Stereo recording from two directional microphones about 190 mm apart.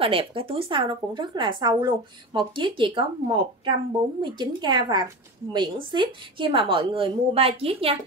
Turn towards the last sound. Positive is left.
turn(degrees=-30)  # may be behind; listen again after turning